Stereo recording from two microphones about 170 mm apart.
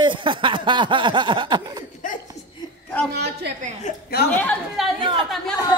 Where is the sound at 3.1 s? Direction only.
75° right (ahead or behind).